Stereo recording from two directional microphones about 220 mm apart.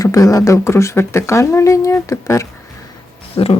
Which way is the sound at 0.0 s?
15° left (ahead or behind).